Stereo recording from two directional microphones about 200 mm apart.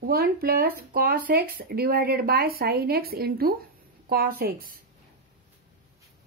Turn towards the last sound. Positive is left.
turn(degrees=-45)  # may be behind; listen again after turning